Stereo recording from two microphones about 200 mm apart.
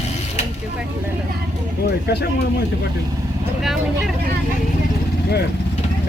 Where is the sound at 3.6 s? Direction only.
Centre (ahead or behind).